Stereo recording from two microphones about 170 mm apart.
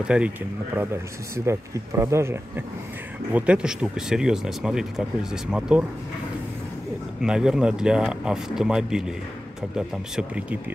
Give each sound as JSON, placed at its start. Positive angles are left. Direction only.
{"t": 0.0, "sound": "speech", "side_deg": -5}
{"t": 1.3, "sound": "speech", "side_deg": -15}
{"t": 7.2, "sound": "speech", "side_deg": -5}